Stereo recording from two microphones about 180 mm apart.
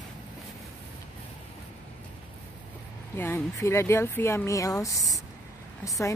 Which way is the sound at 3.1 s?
15° left (ahead or behind).